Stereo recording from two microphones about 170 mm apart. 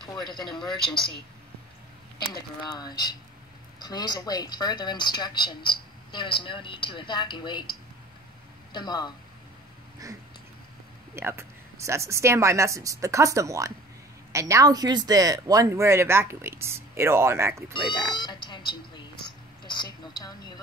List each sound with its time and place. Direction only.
0.5 s a man's voice: centre (ahead or behind)
2.6 s a woman's voice: 25° left (ahead or behind)
8.7 s a woman's voice: 25° left (ahead or behind)
11.1 s speech: 15° right (ahead or behind)
18.1 s a woman's voice: 25° left (ahead or behind)
19.2 s a sound: 25° left (ahead or behind)